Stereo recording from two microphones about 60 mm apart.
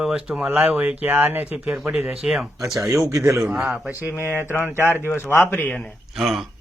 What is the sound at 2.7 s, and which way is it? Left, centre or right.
Speech, right.